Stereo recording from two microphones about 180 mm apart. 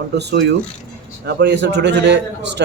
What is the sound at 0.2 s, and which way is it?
A man's voice, 70° right (ahead or behind).